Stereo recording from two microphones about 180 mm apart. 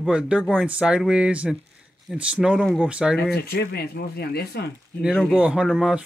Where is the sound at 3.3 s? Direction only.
60° left (ahead or behind).